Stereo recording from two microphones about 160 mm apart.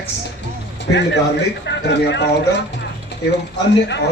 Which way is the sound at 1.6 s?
90° left.